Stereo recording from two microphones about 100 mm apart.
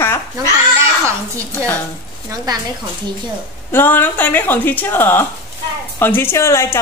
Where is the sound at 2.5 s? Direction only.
40° right (ahead or behind).